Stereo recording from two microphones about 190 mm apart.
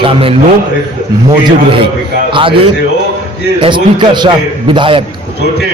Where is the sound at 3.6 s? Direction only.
25° right (ahead or behind).